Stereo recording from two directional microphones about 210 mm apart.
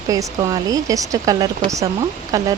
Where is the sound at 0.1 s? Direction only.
15° right (ahead or behind).